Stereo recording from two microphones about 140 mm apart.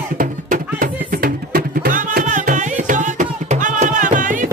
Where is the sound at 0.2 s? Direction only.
90° right.